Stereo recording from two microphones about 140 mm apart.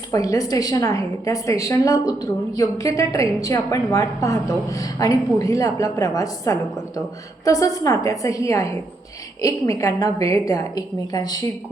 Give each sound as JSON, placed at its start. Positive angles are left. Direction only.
{"t": 0.1, "sound": "a woman's voice", "side_deg": 25}